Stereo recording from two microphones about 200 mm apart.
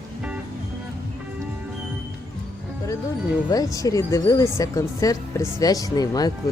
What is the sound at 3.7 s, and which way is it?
Speech, 15° left (ahead or behind).